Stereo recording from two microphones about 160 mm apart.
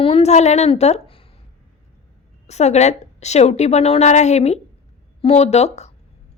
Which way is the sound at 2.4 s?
45° left (ahead or behind).